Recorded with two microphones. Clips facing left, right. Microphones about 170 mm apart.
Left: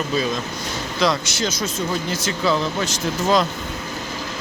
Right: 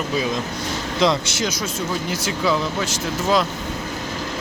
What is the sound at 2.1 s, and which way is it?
Speech, 10° right (ahead or behind).